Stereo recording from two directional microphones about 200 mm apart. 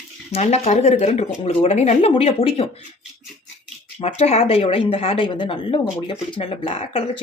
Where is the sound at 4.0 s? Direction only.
30° left (ahead or behind).